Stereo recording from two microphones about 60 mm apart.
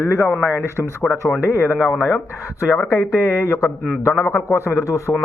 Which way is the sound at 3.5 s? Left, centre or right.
Left.